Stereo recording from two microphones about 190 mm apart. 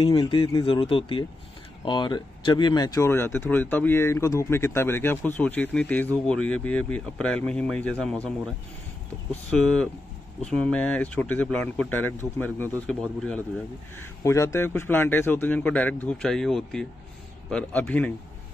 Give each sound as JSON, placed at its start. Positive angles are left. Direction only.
{"t": 0.0, "sound": "speech", "side_deg": 25}
{"t": 9.3, "sound": "speech", "side_deg": 5}